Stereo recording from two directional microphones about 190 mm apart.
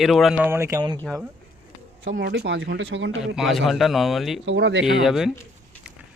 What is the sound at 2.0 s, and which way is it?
Speech, 70° right (ahead or behind).